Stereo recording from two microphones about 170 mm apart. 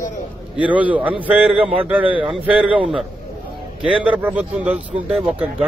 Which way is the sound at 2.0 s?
30° right (ahead or behind).